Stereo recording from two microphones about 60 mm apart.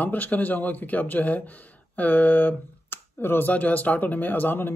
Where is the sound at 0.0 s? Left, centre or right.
Left.